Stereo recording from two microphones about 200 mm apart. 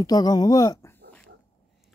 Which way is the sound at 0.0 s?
20° left (ahead or behind).